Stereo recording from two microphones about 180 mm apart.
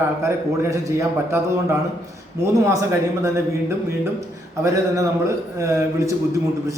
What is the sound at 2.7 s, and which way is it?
A man's voice, 15° right (ahead or behind).